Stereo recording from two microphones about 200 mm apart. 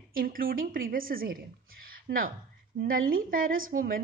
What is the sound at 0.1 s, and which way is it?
A woman's voice, 45° right (ahead or behind).